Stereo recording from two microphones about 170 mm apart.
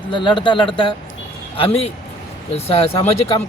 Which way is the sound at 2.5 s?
35° left (ahead or behind).